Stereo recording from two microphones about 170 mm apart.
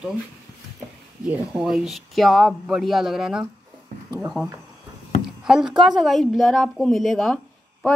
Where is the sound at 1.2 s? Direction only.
5° right (ahead or behind).